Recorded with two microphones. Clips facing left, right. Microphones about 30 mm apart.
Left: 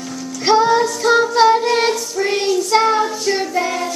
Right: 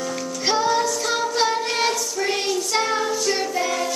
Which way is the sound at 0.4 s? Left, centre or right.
Centre.